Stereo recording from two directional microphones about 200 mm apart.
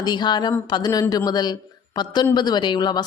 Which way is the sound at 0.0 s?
20° left (ahead or behind).